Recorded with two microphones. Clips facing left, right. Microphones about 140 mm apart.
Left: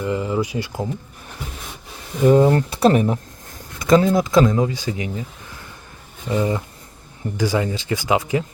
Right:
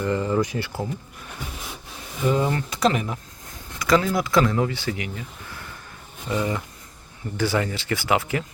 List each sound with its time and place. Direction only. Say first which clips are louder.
0.0 s speech: left 1 dB; 15° left (ahead or behind)
2.2 s speech: left 9 dB; 45° left (ahead or behind)
3.8 s speech: left 5 dB; 25° left (ahead or behind)
6.2 s speech: left 4 dB; 25° left (ahead or behind)